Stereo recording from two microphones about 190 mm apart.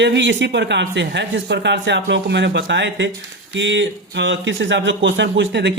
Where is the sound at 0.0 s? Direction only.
70° right (ahead or behind).